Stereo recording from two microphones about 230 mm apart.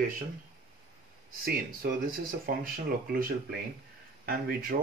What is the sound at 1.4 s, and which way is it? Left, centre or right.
Speech, right.